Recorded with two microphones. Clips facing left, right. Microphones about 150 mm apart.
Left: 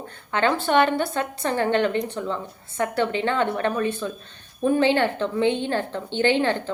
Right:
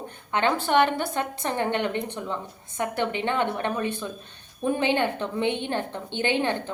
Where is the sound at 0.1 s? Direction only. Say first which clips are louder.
Left 2 dB; 15° right (ahead or behind).